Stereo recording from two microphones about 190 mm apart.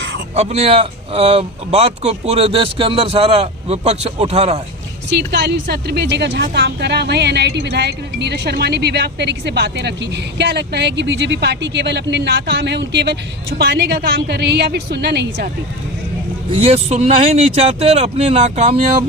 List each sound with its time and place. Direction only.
0.3 s speech: 35° right (ahead or behind)
5.0 s a woman's voice: 65° right (ahead or behind)
16.5 s speech: 35° right (ahead or behind)